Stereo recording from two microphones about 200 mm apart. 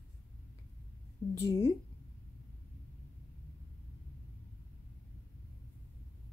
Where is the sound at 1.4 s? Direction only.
15° left (ahead or behind).